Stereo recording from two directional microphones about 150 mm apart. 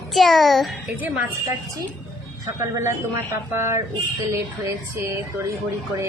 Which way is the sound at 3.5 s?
15° right (ahead or behind).